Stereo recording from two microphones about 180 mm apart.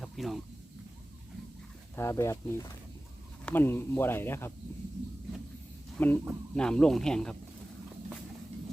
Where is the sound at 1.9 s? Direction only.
15° left (ahead or behind).